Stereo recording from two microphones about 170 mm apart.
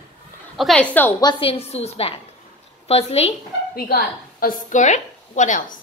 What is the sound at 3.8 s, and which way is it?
A woman's voice, 60° left (ahead or behind).